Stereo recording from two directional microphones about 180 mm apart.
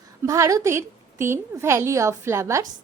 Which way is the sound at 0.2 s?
15° right (ahead or behind).